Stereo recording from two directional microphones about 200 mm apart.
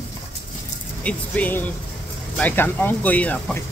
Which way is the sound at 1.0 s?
5° left (ahead or behind).